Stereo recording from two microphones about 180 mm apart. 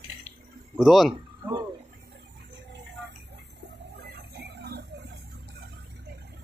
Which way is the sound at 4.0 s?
65° right (ahead or behind).